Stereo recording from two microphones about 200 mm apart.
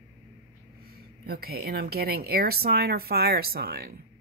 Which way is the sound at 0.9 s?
50° right (ahead or behind).